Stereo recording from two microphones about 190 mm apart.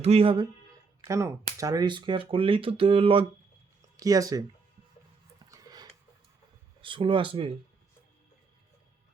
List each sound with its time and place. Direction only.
0.0 s speech: 30° right (ahead or behind)
1.0 s speech: 15° right (ahead or behind)
5.5 s a sound: 20° right (ahead or behind)
6.8 s speech: 25° right (ahead or behind)